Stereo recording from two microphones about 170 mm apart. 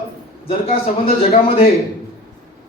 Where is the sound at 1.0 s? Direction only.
35° left (ahead or behind).